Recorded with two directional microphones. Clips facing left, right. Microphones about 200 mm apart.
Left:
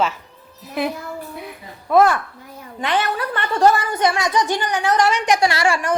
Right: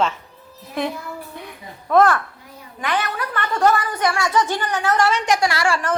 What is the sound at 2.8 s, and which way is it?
A woman's voice, 25° left (ahead or behind).